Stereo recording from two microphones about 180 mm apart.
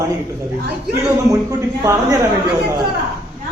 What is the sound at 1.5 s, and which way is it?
Speech, 20° right (ahead or behind).